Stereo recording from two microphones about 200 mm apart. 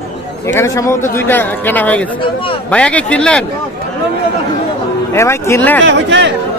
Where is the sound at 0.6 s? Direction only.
15° left (ahead or behind).